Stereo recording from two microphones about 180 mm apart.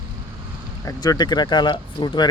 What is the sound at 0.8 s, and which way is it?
Speech, 20° left (ahead or behind).